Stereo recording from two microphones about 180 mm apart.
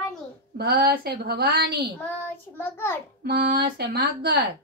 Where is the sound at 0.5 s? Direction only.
60° right (ahead or behind).